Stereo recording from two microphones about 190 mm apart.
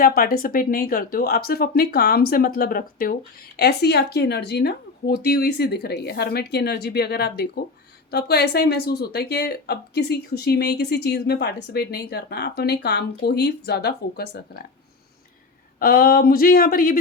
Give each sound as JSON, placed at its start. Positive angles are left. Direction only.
{"t": 0.0, "sound": "speech", "side_deg": 50}
{"t": 15.8, "sound": "speech", "side_deg": 50}